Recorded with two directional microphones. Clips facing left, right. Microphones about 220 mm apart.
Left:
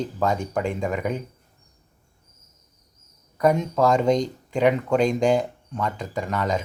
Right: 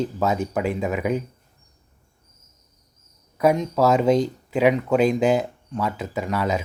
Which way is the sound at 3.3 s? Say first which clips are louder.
Right 1 dB; 5° right (ahead or behind).